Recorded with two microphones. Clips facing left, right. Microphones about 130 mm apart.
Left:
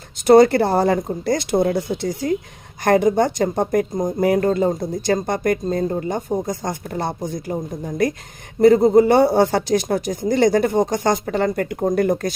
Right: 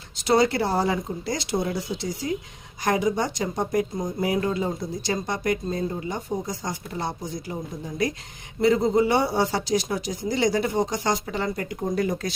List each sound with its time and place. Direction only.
0.2 s speech: 50° left (ahead or behind)